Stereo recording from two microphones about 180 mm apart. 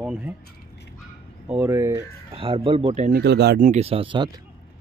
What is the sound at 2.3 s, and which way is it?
Speech, 30° right (ahead or behind).